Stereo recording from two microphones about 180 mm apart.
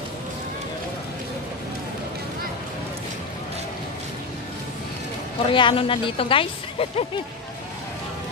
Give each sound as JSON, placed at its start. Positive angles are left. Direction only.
{"t": 5.5, "sound": "speech", "side_deg": 25}